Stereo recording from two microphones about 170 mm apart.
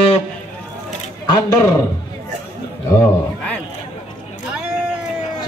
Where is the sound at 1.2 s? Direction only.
25° left (ahead or behind).